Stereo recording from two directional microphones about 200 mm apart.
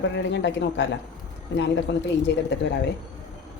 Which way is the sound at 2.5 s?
55° left (ahead or behind).